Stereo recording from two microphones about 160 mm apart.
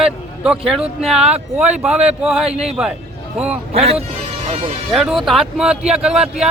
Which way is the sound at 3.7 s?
40° right (ahead or behind).